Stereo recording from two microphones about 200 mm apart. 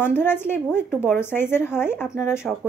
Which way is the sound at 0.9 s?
5° right (ahead or behind).